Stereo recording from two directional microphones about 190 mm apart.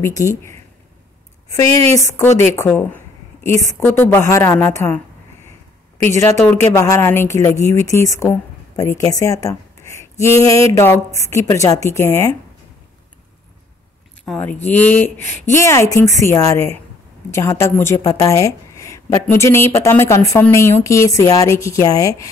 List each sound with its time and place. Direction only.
0.0 s speech: 15° left (ahead or behind)
1.9 s speech: 15° left (ahead or behind)
3.8 s speech: 15° left (ahead or behind)
14.2 s speech: 5° left (ahead or behind)